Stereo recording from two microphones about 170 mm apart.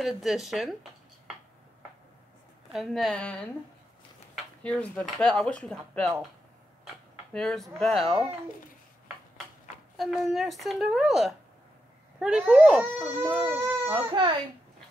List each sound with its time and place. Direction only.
0.0 s speech: centre (ahead or behind)
2.7 s speech: centre (ahead or behind)
4.6 s speech: 5° left (ahead or behind)
7.3 s speech: 5° left (ahead or behind)
9.9 s speech: centre (ahead or behind)
14.1 s a child's voice: 30° right (ahead or behind)